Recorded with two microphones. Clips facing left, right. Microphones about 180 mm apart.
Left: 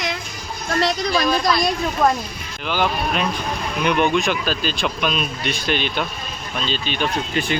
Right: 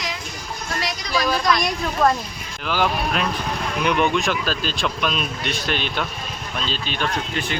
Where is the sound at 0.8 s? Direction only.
60° left (ahead or behind).